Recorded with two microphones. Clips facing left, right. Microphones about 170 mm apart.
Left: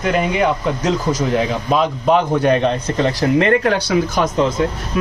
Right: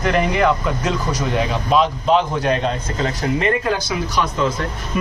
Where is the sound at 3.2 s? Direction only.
75° left (ahead or behind).